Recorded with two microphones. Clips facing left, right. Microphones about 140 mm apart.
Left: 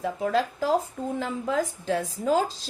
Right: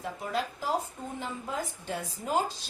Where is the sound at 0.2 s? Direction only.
90° left.